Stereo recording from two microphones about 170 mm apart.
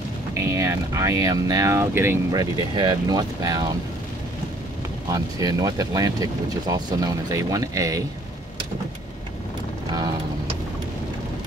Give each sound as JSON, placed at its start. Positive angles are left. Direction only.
{"t": 0.3, "sound": "speech", "side_deg": -15}
{"t": 5.1, "sound": "speech", "side_deg": -20}